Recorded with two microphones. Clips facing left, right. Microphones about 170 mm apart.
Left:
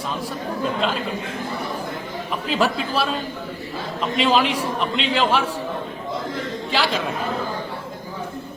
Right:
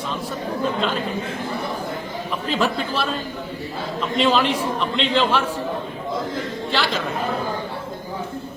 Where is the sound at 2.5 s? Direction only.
5° left (ahead or behind).